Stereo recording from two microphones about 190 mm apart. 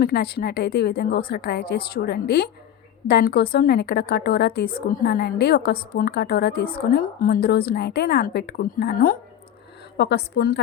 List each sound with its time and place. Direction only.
0.0 s a woman's voice: 55° left (ahead or behind)
10.0 s a woman's voice: 65° left (ahead or behind)